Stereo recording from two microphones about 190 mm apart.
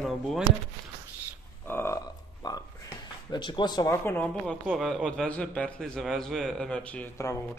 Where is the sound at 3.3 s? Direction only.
25° left (ahead or behind).